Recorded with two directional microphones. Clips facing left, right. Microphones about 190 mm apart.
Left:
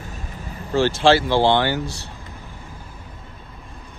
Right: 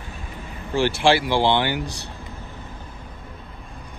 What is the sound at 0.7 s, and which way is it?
Speech, 15° right (ahead or behind).